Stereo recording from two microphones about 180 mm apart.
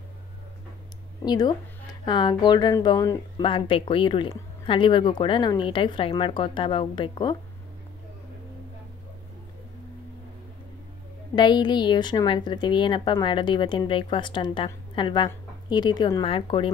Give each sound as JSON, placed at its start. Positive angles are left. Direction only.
{"t": 1.2, "sound": "a woman's voice", "side_deg": 25}
{"t": 11.3, "sound": "a woman's voice", "side_deg": 25}